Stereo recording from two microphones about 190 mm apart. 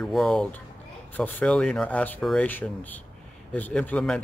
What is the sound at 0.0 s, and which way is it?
Speech, centre (ahead or behind).